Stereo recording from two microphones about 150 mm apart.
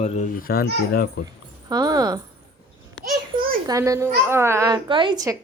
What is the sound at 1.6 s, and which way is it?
Speech, 25° right (ahead or behind).